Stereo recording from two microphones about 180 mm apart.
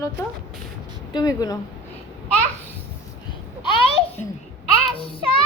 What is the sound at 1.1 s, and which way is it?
Speech, 20° left (ahead or behind).